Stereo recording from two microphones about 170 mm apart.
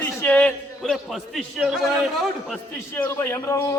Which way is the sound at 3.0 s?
15° left (ahead or behind).